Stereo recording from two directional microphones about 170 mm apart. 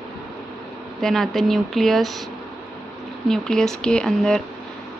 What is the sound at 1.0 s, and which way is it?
Speech, centre (ahead or behind).